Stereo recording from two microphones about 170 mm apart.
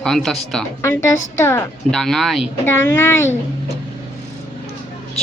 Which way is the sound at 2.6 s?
15° left (ahead or behind).